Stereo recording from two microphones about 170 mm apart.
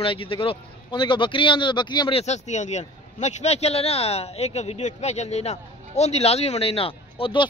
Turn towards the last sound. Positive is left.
turn(degrees=30)  # may be behind; listen again after turning